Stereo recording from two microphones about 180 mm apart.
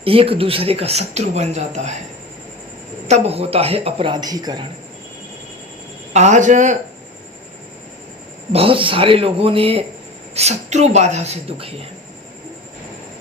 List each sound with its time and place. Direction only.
0.0 s speech: 30° right (ahead or behind)
3.1 s speech: 35° right (ahead or behind)
6.1 s speech: 40° right (ahead or behind)
8.5 s speech: 30° right (ahead or behind)